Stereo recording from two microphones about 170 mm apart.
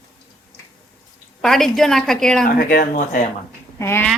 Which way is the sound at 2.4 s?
55° left (ahead or behind).